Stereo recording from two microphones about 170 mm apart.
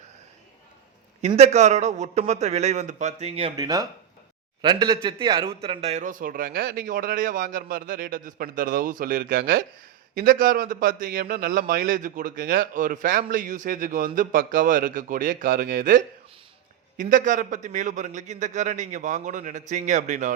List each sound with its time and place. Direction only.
1.4 s a man's voice: 40° right (ahead or behind)
3.6 s a man's voice: 20° right (ahead or behind); by 20.3 s 45° right (ahead or behind)